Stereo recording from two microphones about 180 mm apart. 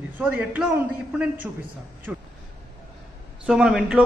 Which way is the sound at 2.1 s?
5° right (ahead or behind).